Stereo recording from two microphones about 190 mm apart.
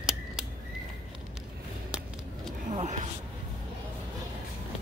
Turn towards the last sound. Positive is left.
turn(degrees=-40)  # may be behind; listen again after turning